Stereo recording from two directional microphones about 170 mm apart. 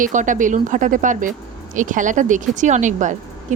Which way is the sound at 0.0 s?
50° right (ahead or behind).